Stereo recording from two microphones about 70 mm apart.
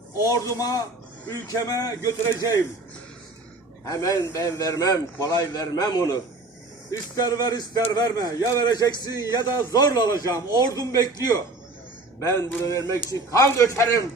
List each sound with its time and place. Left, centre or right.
0.3 s speech: left
3.8 s speech: left
7.2 s music: left
7.9 s speech: left
9.3 s a man's voice: left